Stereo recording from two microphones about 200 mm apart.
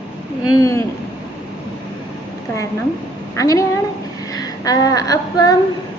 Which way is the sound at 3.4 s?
15° left (ahead or behind).